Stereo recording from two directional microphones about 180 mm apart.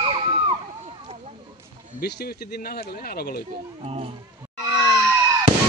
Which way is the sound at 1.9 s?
65° left (ahead or behind).